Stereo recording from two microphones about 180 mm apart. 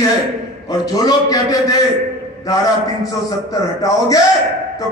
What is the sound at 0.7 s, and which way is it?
A man's voice, 20° left (ahead or behind).